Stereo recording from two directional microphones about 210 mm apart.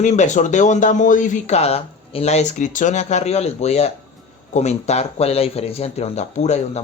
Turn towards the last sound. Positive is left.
turn(degrees=35)  # may be behind; listen again after turning